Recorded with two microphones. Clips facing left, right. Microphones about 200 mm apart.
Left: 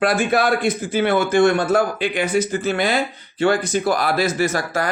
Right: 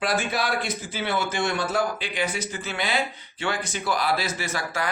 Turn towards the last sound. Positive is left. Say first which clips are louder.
# left 8 dB
turn(degrees=45)  # may be behind; listen again after turning